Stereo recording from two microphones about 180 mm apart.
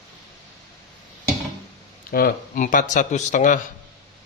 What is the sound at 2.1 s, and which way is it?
Speech, 50° left (ahead or behind).